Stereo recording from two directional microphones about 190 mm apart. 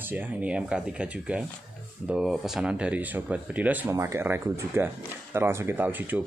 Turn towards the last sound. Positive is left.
turn(degrees=-10)  # may be behind; listen again after turning